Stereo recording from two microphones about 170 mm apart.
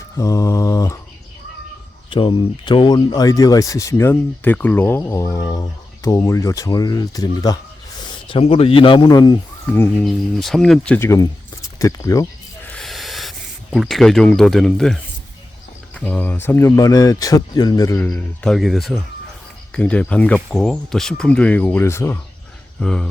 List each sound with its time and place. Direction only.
0.2 s mantra: 20° left (ahead or behind)
2.0 s speech: 30° left (ahead or behind)
8.3 s a man's voice: 35° left (ahead or behind)
9.7 s speech: 10° left (ahead or behind)
11.8 s a sound: 20° left (ahead or behind)
12.7 s a sound: centre (ahead or behind)
16.0 s speech: 10° left (ahead or behind)
18.0 s speech: 5° left (ahead or behind)